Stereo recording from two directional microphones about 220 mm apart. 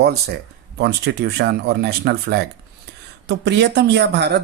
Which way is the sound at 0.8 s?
50° right (ahead or behind).